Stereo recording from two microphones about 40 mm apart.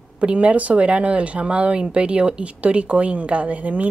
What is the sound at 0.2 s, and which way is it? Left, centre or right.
Speech, right.